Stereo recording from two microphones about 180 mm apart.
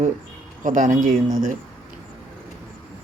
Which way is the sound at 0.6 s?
45° right (ahead or behind).